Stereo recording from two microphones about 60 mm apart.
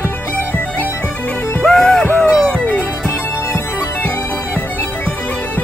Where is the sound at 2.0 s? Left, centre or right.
Left.